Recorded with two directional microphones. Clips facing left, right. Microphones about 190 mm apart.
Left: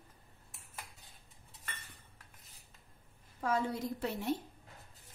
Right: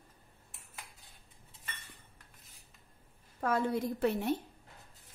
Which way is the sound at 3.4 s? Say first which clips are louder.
Right 3 dB; 55° right (ahead or behind).